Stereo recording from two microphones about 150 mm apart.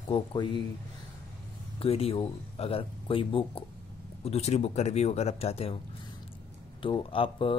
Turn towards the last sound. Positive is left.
turn(degrees=35)  # may be behind; listen again after turning